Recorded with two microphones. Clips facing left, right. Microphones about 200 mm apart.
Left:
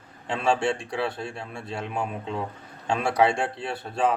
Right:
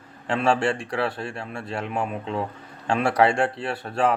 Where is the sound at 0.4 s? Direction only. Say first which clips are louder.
Right 1 dB; 65° right (ahead or behind).